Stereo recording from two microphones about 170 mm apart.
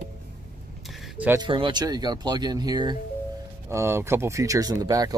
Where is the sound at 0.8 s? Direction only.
Centre (ahead or behind).